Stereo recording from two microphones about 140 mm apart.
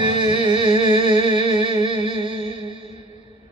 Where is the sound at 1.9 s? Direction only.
50° left (ahead or behind).